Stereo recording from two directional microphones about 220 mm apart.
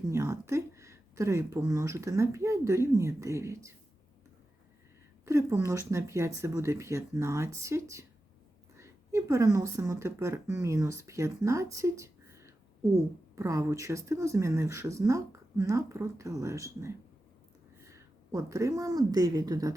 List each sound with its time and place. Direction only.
0.1 s speech: 10° right (ahead or behind)
5.2 s speech: 15° right (ahead or behind)
17.9 s a woman's voice: 15° right (ahead or behind)